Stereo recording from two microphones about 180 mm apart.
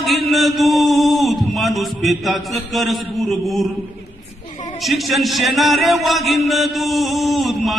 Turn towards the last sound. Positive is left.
turn(degrees=0)  # may be behind; listen again after turning